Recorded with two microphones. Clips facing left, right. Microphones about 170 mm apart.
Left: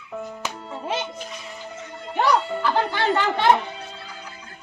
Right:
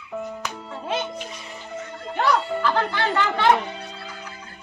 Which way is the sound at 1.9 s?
Centre (ahead or behind).